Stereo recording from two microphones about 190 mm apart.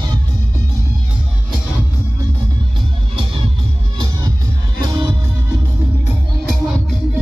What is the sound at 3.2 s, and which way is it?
Music, 30° right (ahead or behind).